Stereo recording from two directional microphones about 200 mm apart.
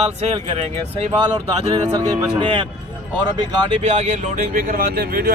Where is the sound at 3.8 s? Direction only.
35° right (ahead or behind).